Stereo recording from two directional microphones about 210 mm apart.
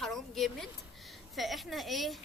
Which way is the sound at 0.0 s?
Centre (ahead or behind).